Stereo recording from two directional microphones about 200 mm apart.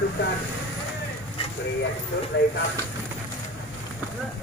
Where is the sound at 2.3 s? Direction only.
60° left (ahead or behind).